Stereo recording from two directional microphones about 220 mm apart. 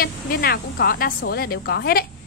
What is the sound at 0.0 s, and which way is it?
Speech, 40° left (ahead or behind).